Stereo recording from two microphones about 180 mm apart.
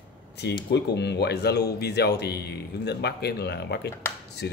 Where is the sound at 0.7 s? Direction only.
70° left (ahead or behind).